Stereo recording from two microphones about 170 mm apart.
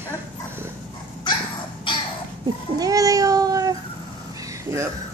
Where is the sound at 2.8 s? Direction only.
20° right (ahead or behind).